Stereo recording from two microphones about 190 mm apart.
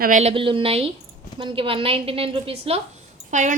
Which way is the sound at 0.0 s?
40° right (ahead or behind).